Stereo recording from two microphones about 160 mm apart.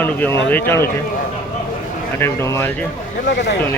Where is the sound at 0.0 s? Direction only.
15° left (ahead or behind).